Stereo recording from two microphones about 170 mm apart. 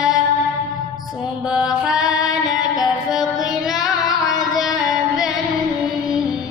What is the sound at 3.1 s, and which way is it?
Mantra, centre (ahead or behind).